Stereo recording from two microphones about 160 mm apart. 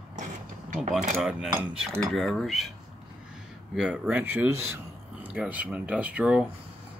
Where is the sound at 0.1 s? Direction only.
50° right (ahead or behind).